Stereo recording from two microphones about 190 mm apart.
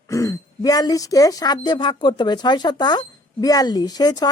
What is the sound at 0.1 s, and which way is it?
Speech, 15° left (ahead or behind).